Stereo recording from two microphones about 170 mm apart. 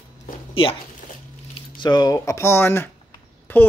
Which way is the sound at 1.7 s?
25° left (ahead or behind).